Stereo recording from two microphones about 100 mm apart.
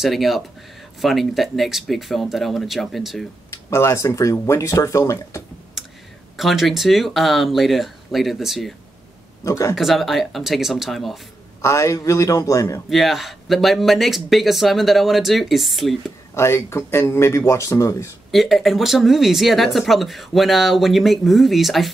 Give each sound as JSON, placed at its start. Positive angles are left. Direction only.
{"t": 0.0, "sound": "speech", "side_deg": 0}
{"t": 3.7, "sound": "speech", "side_deg": 25}
{"t": 6.3, "sound": "speech", "side_deg": 0}
{"t": 9.4, "sound": "speech", "side_deg": 30}
{"t": 9.8, "sound": "speech", "side_deg": 0}
{"t": 11.6, "sound": "speech", "side_deg": 30}
{"t": 12.9, "sound": "speech", "side_deg": 0}
{"t": 16.3, "sound": "speech", "side_deg": 25}
{"t": 18.3, "sound": "speech", "side_deg": 0}